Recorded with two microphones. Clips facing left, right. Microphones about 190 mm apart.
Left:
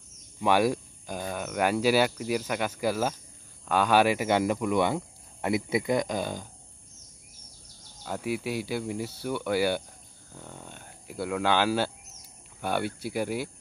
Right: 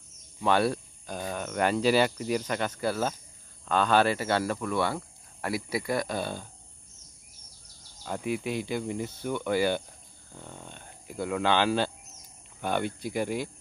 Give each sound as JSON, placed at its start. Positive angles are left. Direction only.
{"t": 0.4, "sound": "speech", "side_deg": 10}
{"t": 8.0, "sound": "speech", "side_deg": 5}